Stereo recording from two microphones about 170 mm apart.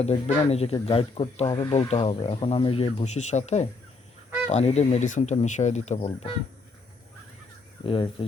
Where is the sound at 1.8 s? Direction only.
35° left (ahead or behind).